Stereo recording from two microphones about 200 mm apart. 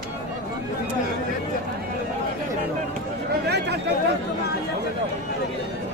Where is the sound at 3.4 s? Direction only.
55° right (ahead or behind).